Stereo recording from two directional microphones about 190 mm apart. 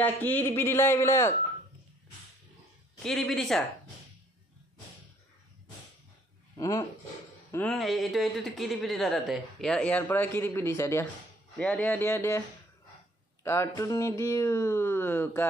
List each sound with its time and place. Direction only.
0.0 s speech: 10° left (ahead or behind)
3.0 s speech: centre (ahead or behind)
6.5 s speech: 20° left (ahead or behind)
7.5 s speech: 5° left (ahead or behind)